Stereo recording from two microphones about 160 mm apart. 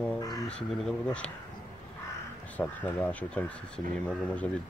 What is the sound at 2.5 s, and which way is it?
Speech, 10° left (ahead or behind).